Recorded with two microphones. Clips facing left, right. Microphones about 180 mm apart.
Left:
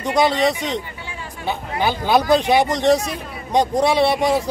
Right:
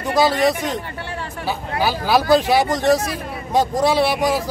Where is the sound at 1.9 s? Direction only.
20° left (ahead or behind).